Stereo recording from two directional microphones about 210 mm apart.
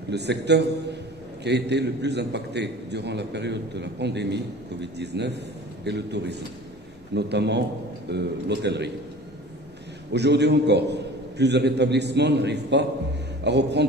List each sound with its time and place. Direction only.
0.1 s a man's voice: 55° right (ahead or behind)
10.1 s a man's voice: 55° right (ahead or behind)